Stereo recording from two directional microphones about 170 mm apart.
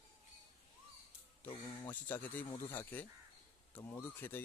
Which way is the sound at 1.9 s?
10° left (ahead or behind).